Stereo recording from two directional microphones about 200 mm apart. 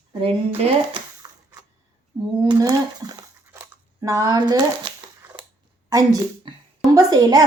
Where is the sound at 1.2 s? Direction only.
20° right (ahead or behind).